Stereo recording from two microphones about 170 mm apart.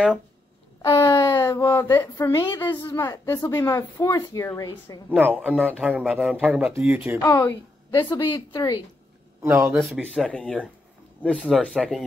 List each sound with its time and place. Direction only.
0.8 s speech: 15° left (ahead or behind)
5.1 s a man's voice: 10° right (ahead or behind)
7.2 s speech: 20° left (ahead or behind)
9.4 s a man's voice: 15° right (ahead or behind)
10.3 s speech: 5° left (ahead or behind)